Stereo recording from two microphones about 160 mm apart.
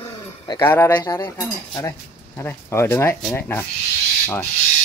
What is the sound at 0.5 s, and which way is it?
Speech, 15° left (ahead or behind).